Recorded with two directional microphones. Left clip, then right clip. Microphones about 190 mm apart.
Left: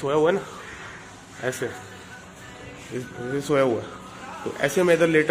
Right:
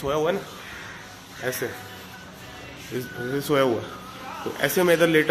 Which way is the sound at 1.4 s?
20° left (ahead or behind).